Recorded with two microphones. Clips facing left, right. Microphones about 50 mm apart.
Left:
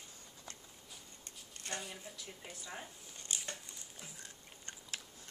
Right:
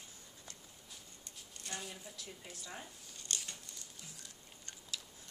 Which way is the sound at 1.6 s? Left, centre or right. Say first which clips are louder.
Left 3 dB; left.